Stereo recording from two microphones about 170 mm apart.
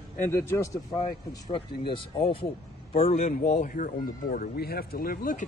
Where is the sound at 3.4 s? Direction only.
55° left (ahead or behind).